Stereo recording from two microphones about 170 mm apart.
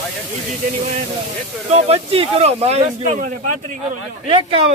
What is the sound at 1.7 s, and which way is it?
Speech, 35° right (ahead or behind).